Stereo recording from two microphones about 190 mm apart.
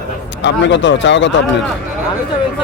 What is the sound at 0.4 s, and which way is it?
Speech, 70° left (ahead or behind).